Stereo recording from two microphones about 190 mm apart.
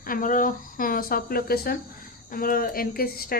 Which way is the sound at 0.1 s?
45° left (ahead or behind).